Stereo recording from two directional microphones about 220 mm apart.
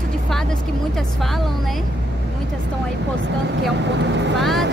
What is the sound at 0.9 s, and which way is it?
Speech, centre (ahead or behind).